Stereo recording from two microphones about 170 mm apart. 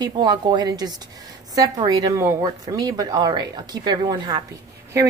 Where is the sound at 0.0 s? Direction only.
25° right (ahead or behind).